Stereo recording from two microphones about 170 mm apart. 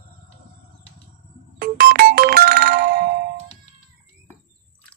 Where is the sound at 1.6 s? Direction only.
60° right (ahead or behind).